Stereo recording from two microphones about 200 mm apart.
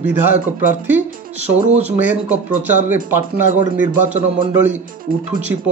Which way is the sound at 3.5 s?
40° right (ahead or behind).